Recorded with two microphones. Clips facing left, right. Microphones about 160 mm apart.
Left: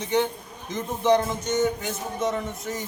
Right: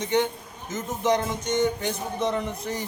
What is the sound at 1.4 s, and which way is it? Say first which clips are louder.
A man's voice: even; 5° left (ahead or behind).